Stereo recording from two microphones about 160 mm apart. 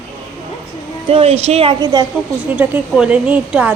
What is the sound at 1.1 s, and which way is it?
Speech, 40° right (ahead or behind).